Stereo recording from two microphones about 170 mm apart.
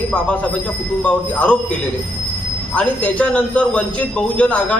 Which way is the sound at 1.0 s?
5° left (ahead or behind).